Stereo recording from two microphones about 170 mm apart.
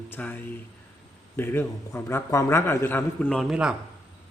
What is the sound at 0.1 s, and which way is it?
Speech, 10° left (ahead or behind).